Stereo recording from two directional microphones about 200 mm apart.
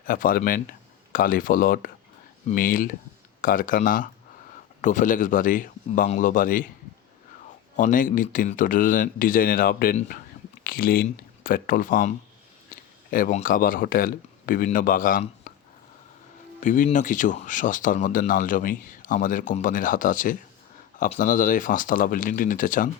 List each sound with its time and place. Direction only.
0.0 s speech: 45° left (ahead or behind)
7.8 s speech: 40° left (ahead or behind)
16.6 s speech: 40° left (ahead or behind)